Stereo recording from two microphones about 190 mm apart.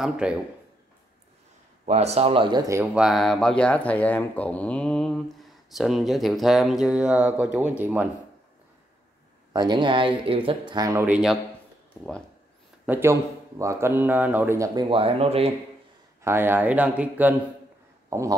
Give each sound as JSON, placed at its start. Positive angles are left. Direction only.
{"t": 0.0, "sound": "speech", "side_deg": -5}
{"t": 1.9, "sound": "speech", "side_deg": -35}
{"t": 9.5, "sound": "speech", "side_deg": -20}
{"t": 12.8, "sound": "speech", "side_deg": -10}
{"t": 14.9, "sound": "speech", "side_deg": -30}
{"t": 16.2, "sound": "speech", "side_deg": -15}